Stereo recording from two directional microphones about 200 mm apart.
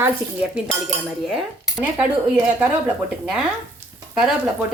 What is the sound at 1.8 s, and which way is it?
Speech, 10° right (ahead or behind).